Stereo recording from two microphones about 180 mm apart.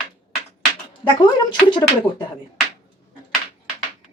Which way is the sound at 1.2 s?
25° left (ahead or behind).